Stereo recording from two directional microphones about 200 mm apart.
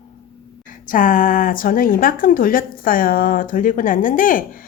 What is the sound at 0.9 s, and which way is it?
Speech, 45° left (ahead or behind).